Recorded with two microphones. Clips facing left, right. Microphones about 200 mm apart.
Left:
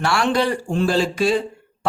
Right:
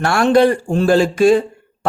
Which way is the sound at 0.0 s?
50° right (ahead or behind).